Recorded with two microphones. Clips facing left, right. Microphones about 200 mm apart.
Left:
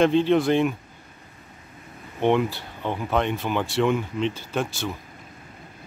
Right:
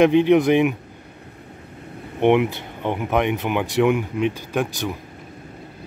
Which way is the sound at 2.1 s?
20° right (ahead or behind).